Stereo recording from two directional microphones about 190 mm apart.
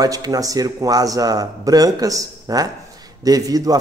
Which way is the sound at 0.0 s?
20° right (ahead or behind).